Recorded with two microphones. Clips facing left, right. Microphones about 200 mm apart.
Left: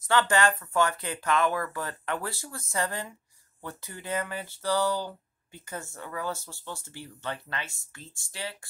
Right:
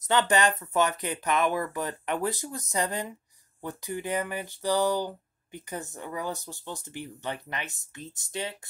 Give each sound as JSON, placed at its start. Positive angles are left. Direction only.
{"t": 0.0, "sound": "speech", "side_deg": -20}